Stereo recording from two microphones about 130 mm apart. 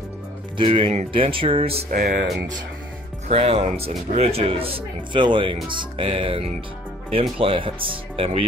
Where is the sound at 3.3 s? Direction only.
50° right (ahead or behind).